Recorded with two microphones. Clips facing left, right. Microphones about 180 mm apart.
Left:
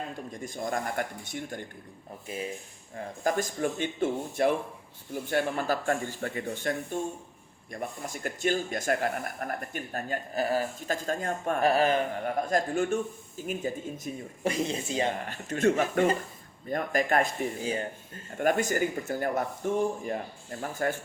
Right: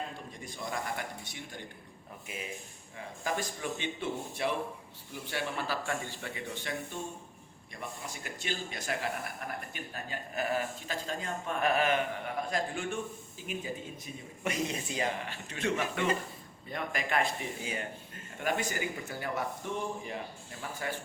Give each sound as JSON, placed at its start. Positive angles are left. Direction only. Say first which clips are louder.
{"t": 0.3, "sound": "speech", "louder": "left 6 dB", "side_deg": 45}
{"t": 2.2, "sound": "a man's voice", "louder": "left 7 dB", "side_deg": 35}
{"t": 10.3, "sound": "speech", "louder": "left 4 dB", "side_deg": 35}
{"t": 11.6, "sound": "a man's voice", "louder": "left 4 dB", "side_deg": 35}
{"t": 12.2, "sound": "speech", "louder": "left 6 dB", "side_deg": 45}
{"t": 15.2, "sound": "speech", "louder": "left 9 dB", "side_deg": 45}
{"t": 18.3, "sound": "speech", "louder": "left 7 dB", "side_deg": 45}